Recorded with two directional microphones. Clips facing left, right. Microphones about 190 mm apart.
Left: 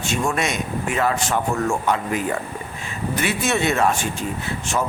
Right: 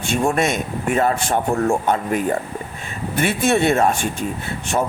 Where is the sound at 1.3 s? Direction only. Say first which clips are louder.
Right 3 dB; 35° right (ahead or behind).